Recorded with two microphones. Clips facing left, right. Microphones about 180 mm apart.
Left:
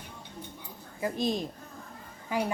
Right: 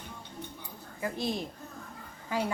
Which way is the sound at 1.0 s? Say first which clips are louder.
Left 3 dB; 20° left (ahead or behind).